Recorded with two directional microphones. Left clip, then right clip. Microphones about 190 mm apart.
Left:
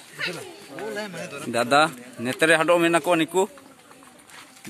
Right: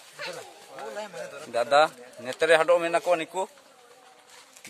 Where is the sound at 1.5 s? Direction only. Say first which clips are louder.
Left 2 dB; 5° right (ahead or behind).